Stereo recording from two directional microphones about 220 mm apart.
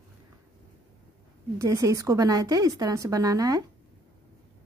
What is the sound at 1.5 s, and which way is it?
A woman's voice, 15° right (ahead or behind).